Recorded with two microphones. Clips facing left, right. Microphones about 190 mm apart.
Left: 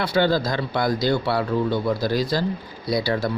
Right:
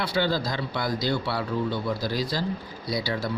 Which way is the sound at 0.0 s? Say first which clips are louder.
Left 5 dB; 50° left (ahead or behind).